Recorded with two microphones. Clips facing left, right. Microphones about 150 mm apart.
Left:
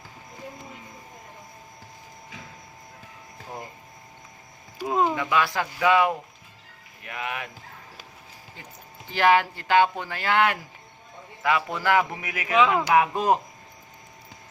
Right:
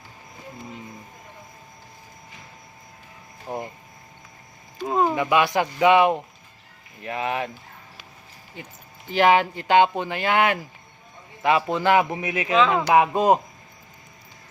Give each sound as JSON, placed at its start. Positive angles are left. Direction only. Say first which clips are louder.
{"t": 3.5, "sound": "speech", "louder": "right 7 dB", "side_deg": -35}
{"t": 4.8, "sound": "a sound", "louder": "right 2 dB", "side_deg": 5}
{"t": 5.0, "sound": "speech", "louder": "right 4 dB", "side_deg": -15}
{"t": 9.1, "sound": "speech", "louder": "right 2 dB", "side_deg": -20}
{"t": 12.5, "sound": "speech", "louder": "right 1 dB", "side_deg": 10}
{"t": 12.9, "sound": "speech", "louder": "right 3 dB", "side_deg": -25}